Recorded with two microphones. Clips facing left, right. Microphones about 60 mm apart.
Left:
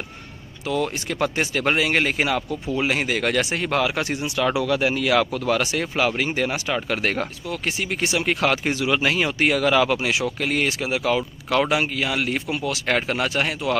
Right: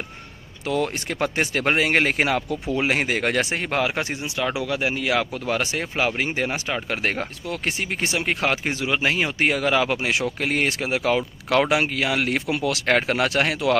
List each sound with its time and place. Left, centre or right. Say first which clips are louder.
0.7 s speech: even; right; by 5.3 s centre
5.5 s speech: left 2 dB; right
7.4 s speech: even; right
8.2 s speech: left 2 dB; right
12.8 s speech: right 2 dB; right
13.3 s speech: right 2 dB; right